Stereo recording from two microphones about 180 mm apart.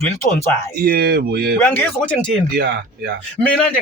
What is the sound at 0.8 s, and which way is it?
Speech, 60° right (ahead or behind).